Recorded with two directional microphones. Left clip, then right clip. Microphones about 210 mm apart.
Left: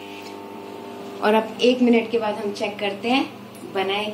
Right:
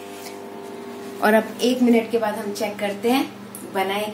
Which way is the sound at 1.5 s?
20° right (ahead or behind).